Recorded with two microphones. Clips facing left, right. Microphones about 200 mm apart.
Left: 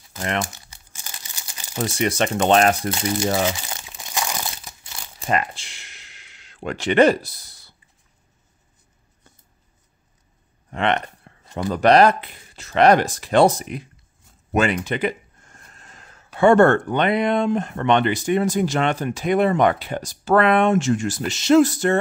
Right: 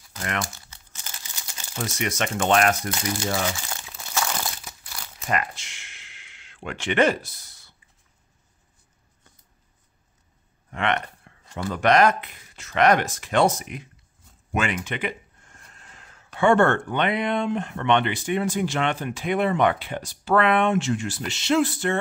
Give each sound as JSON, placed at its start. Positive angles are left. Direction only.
{"t": 0.2, "sound": "speech", "side_deg": 30}
{"t": 0.7, "sound": "crumpling", "side_deg": 15}
{"t": 1.8, "sound": "speech", "side_deg": 30}
{"t": 3.8, "sound": "crumpling", "side_deg": 15}
{"t": 10.7, "sound": "a sound", "side_deg": 30}
{"t": 11.7, "sound": "speech", "side_deg": 35}
{"t": 14.5, "sound": "a sound", "side_deg": 35}
{"t": 16.3, "sound": "speech", "side_deg": 40}